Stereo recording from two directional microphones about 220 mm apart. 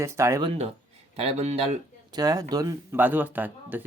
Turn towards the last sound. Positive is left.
turn(degrees=-10)  # may be behind; listen again after turning